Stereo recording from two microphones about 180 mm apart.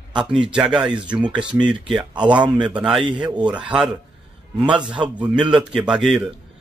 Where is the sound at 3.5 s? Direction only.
5° right (ahead or behind).